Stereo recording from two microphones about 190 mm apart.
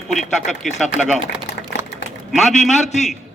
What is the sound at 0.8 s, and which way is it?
Speech, centre (ahead or behind).